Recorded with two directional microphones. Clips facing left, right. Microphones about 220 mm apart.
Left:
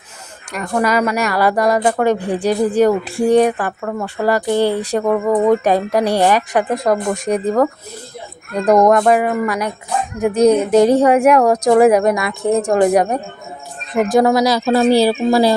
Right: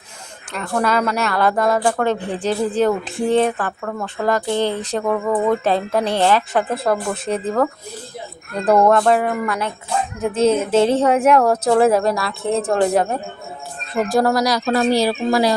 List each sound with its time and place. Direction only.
0.5 s speech: 10° left (ahead or behind); by 15.5 s 30° left (ahead or behind)